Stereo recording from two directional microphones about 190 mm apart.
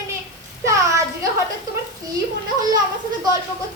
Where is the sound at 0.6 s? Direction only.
15° right (ahead or behind).